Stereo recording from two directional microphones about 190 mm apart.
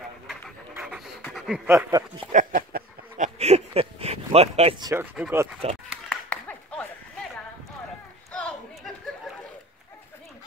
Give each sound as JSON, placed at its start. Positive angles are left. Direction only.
{"t": 0.7, "sound": "pant", "side_deg": -5}
{"t": 1.3, "sound": "a sound", "side_deg": 0}
{"t": 1.7, "sound": "speech", "side_deg": -15}
{"t": 2.3, "sound": "a sound", "side_deg": -45}
{"t": 4.7, "sound": "speech", "side_deg": -20}
{"t": 5.1, "sound": "speech", "side_deg": -5}
{"t": 5.6, "sound": "speech", "side_deg": -30}
{"t": 6.0, "sound": "clapping", "side_deg": 5}
{"t": 8.3, "sound": "a sound", "side_deg": 5}